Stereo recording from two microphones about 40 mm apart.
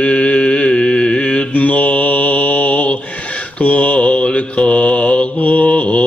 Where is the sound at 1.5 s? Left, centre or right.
Left.